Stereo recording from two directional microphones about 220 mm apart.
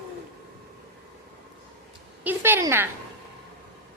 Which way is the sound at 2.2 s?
10° right (ahead or behind).